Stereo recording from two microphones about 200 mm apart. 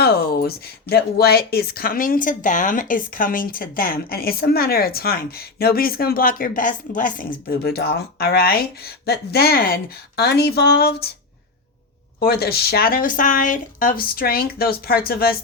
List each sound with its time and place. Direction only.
0.0 s speech: 50° left (ahead or behind)
12.2 s speech: 50° left (ahead or behind)